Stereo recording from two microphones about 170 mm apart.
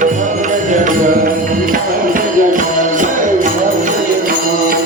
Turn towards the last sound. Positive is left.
turn(degrees=-55)  # may be behind; listen again after turning